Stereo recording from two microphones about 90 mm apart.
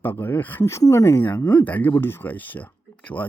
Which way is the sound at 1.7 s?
20° left (ahead or behind).